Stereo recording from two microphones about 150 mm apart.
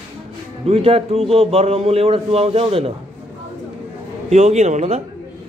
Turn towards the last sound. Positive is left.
turn(degrees=-45)  # may be behind; listen again after turning